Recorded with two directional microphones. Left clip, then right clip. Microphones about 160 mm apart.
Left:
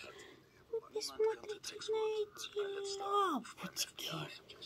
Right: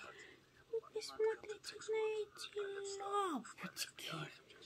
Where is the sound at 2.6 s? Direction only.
50° left (ahead or behind).